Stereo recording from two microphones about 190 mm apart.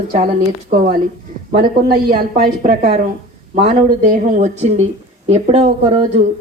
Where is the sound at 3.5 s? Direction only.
35° right (ahead or behind).